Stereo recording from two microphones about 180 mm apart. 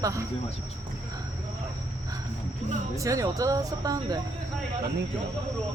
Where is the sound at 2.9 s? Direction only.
20° right (ahead or behind).